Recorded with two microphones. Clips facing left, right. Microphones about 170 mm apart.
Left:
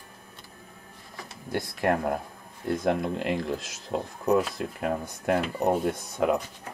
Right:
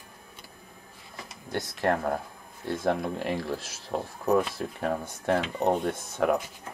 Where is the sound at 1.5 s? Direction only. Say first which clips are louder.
Left 2 dB; 20° right (ahead or behind).